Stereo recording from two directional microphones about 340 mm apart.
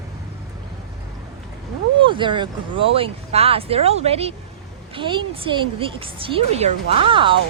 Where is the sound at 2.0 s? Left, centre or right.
Centre.